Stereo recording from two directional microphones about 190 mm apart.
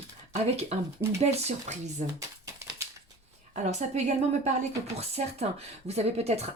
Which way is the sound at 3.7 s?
35° right (ahead or behind).